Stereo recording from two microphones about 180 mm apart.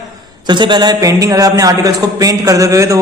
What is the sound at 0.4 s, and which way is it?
A man's voice, 25° right (ahead or behind).